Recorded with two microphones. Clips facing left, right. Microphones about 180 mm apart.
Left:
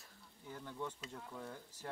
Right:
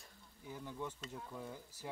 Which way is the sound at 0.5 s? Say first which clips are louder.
Even; 10° right (ahead or behind).